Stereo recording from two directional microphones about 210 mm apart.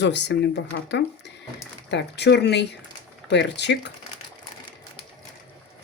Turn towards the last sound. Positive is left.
turn(degrees=55)  # may be behind; listen again after turning